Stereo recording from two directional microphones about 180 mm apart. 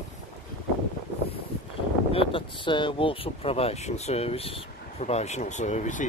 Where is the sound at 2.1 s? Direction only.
30° left (ahead or behind).